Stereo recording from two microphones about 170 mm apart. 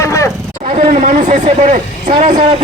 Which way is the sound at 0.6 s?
45° right (ahead or behind).